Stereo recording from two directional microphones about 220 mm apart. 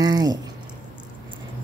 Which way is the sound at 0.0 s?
15° right (ahead or behind).